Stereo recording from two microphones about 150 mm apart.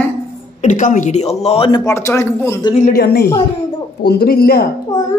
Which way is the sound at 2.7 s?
75° left (ahead or behind).